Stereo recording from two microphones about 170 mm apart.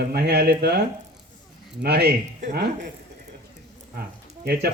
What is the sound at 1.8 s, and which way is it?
Speech, 70° right (ahead or behind).